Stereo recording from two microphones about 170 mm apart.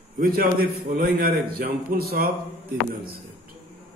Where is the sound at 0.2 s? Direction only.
60° right (ahead or behind).